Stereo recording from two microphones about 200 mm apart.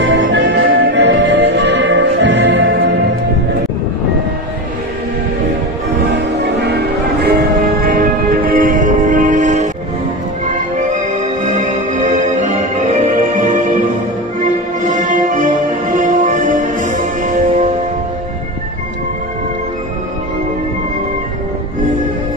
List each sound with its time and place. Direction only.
0.0 s music: 65° right (ahead or behind)
7.2 s music: 50° right (ahead or behind)